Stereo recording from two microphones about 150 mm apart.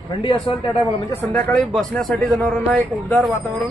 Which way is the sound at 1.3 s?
10° left (ahead or behind).